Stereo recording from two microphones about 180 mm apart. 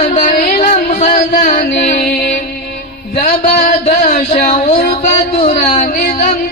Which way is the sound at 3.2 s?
45° left (ahead or behind).